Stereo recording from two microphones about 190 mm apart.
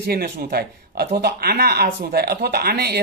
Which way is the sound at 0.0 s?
55° right (ahead or behind).